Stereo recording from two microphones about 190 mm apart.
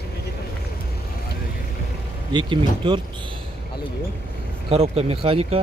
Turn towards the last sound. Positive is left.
turn(degrees=-30)  # may be behind; listen again after turning